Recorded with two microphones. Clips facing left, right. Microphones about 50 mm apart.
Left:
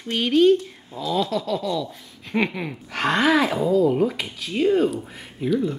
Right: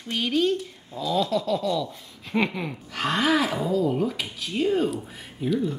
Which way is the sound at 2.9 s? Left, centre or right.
Left.